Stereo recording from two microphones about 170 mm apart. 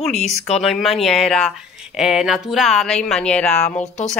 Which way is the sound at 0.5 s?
Centre (ahead or behind).